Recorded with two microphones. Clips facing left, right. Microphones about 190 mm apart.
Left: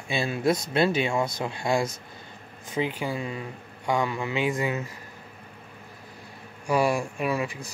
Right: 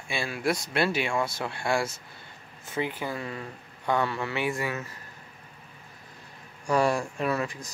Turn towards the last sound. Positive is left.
turn(degrees=10)  # may be behind; listen again after turning